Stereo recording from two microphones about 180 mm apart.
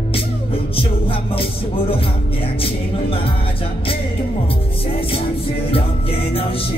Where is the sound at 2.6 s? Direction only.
30° left (ahead or behind).